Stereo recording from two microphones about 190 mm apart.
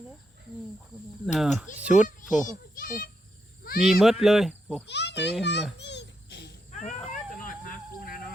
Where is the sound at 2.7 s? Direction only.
50° left (ahead or behind).